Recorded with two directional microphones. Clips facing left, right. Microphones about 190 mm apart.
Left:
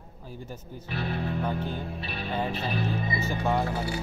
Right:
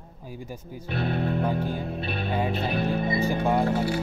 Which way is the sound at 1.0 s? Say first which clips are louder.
Right 5 dB; 50° right (ahead or behind).